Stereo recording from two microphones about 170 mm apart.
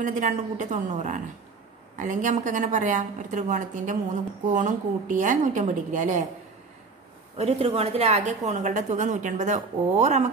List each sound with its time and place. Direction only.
0.0 s a woman's voice: 50° right (ahead or behind)
7.3 s a woman's voice: 40° right (ahead or behind)